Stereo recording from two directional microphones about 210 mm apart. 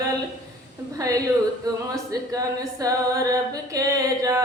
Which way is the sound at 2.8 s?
15° right (ahead or behind).